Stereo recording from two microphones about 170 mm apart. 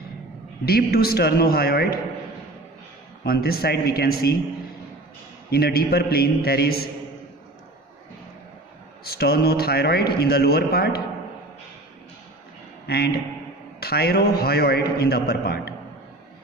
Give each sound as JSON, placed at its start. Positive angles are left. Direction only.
{"t": 0.7, "sound": "a man's voice", "side_deg": 65}
{"t": 3.3, "sound": "a man's voice", "side_deg": 65}
{"t": 5.5, "sound": "a man's voice", "side_deg": 65}
{"t": 9.0, "sound": "a man's voice", "side_deg": 65}
{"t": 12.8, "sound": "a man's voice", "side_deg": 70}